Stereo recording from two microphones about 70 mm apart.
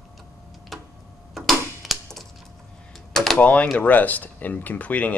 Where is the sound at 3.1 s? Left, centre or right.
Centre.